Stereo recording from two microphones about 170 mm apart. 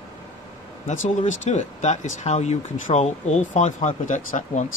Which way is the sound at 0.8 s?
45° left (ahead or behind).